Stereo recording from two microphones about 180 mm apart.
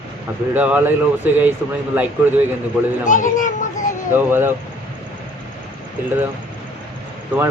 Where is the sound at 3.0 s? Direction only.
45° left (ahead or behind).